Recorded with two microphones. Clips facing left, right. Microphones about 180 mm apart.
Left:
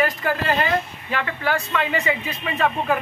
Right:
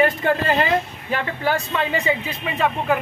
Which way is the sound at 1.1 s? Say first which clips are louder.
Right 2 dB; 35° right (ahead or behind).